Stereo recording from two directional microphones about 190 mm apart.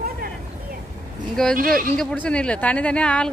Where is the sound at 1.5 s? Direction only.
50° right (ahead or behind).